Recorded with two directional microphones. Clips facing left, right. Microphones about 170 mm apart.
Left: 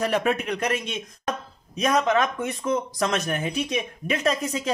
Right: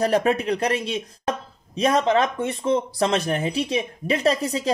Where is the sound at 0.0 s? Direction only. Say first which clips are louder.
Right 4 dB; 35° right (ahead or behind).